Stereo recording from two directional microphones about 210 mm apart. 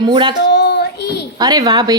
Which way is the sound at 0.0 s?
20° right (ahead or behind).